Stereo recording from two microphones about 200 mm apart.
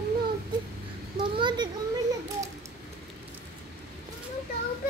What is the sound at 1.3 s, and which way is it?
Children playing, 20° right (ahead or behind).